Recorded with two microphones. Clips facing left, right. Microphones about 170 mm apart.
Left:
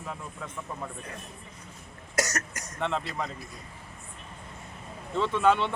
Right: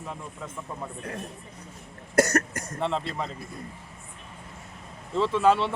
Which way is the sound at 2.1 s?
55° right (ahead or behind).